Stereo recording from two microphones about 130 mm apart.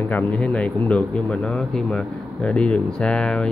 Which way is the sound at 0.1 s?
10° left (ahead or behind).